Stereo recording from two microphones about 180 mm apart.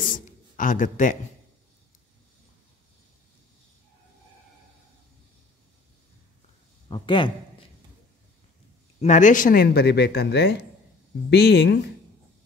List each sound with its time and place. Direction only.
0.1 s a sound: 45° left (ahead or behind)
6.9 s a man's voice: 25° left (ahead or behind)
9.0 s speech: 45° left (ahead or behind); by 11.8 s 65° left (ahead or behind)